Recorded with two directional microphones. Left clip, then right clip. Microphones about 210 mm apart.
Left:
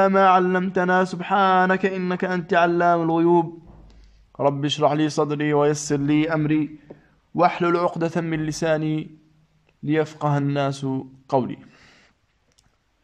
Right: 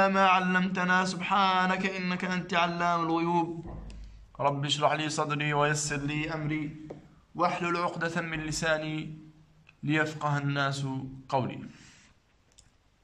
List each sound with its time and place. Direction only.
0.0 s a man's voice: 35° left (ahead or behind)